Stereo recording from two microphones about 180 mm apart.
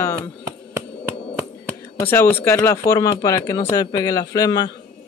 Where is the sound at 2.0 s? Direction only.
10° left (ahead or behind).